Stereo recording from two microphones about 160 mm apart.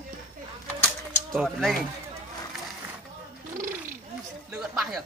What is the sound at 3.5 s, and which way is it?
Purr, 55° right (ahead or behind).